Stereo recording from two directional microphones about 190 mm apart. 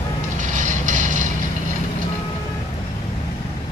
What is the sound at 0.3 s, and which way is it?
Mechanisms, 40° right (ahead or behind).